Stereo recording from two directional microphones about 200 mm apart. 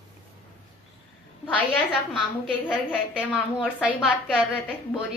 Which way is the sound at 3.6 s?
5° right (ahead or behind).